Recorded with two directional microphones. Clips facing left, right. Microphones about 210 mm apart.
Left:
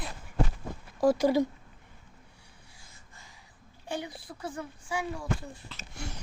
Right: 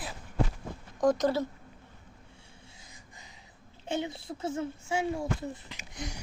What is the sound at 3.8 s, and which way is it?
Speech, 25° right (ahead or behind).